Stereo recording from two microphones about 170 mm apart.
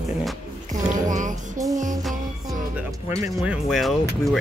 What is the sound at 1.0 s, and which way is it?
Music, 50° right (ahead or behind).